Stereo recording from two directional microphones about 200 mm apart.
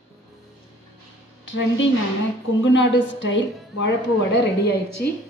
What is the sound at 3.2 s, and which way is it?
Speech, 65° left (ahead or behind).